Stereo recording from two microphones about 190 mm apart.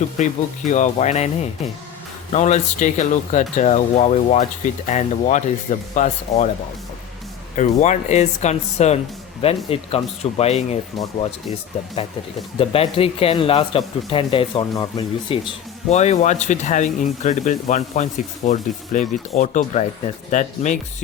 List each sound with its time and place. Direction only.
0.2 s a man's voice: 40° left (ahead or behind)
7.5 s a man's voice: 40° left (ahead or behind)
12.5 s a man's voice: 30° left (ahead or behind)